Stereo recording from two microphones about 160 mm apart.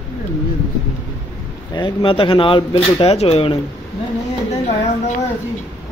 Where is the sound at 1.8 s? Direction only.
30° left (ahead or behind).